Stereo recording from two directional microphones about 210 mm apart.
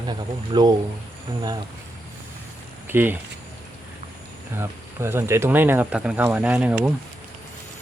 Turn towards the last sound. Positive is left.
turn(degrees=-5)  # may be behind; listen again after turning